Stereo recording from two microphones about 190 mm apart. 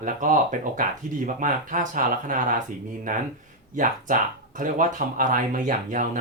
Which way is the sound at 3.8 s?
40° right (ahead or behind).